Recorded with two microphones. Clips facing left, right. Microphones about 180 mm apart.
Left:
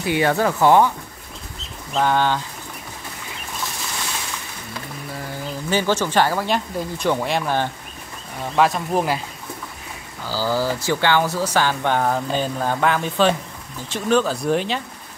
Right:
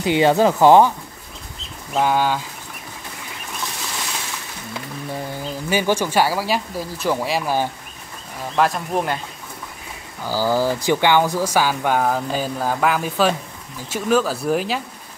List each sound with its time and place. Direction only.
0.0 s speech: 20° right (ahead or behind)
2.0 s speech: 10° right (ahead or behind)
5.4 s speech: 10° right (ahead or behind); by 9.2 s 5° left (ahead or behind)
10.2 s speech: 15° right (ahead or behind)